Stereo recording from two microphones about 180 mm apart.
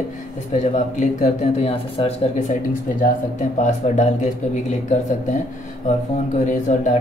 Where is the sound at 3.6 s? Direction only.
40° left (ahead or behind).